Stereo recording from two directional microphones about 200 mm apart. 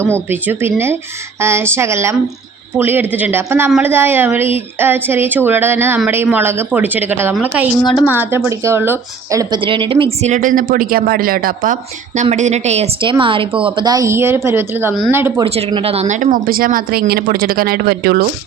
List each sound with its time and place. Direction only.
0.0 s a woman's voice: 10° right (ahead or behind)
15.4 s speech: 30° right (ahead or behind); by 18.2 s 50° right (ahead or behind)